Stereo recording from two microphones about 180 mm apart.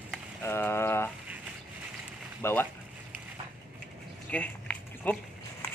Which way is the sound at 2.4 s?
10° left (ahead or behind).